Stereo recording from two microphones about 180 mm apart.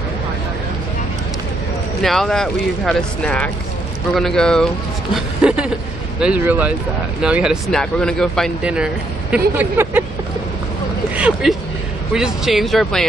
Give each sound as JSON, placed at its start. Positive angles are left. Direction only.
{"t": 2.0, "sound": "speech", "side_deg": 0}
{"t": 11.1, "sound": "speech", "side_deg": -5}